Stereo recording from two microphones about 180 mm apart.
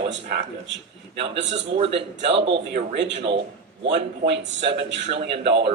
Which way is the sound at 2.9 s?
80° right.